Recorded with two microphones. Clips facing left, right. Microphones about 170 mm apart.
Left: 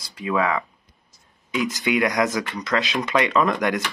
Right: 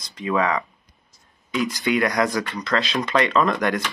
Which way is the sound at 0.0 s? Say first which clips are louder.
Right 1 dB; 5° left (ahead or behind).